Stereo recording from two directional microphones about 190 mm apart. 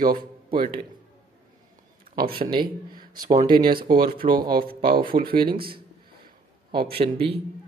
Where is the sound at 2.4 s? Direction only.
25° right (ahead or behind).